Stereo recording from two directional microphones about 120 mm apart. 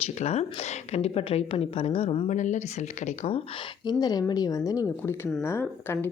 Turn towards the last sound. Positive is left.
turn(degrees=20)  # may be behind; listen again after turning